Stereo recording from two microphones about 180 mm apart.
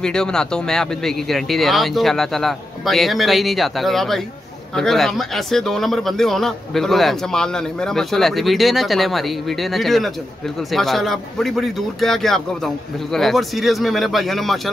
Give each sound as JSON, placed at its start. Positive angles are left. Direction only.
{"t": 0.0, "sound": "speech", "side_deg": 5}